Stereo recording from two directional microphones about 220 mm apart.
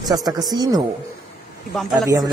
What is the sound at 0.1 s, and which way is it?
Speech, 15° right (ahead or behind).